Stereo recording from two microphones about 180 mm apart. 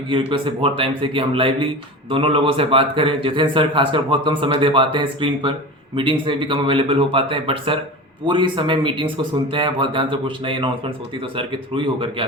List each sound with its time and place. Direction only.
0.1 s a man's voice: 30° right (ahead or behind)